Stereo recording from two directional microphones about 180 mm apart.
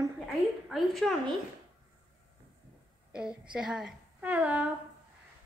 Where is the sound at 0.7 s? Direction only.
Centre (ahead or behind).